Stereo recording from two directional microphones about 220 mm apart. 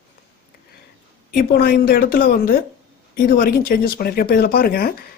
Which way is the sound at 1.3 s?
45° left (ahead or behind).